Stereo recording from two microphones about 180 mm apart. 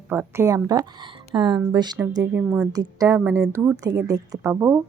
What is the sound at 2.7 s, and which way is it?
Speech, 20° right (ahead or behind).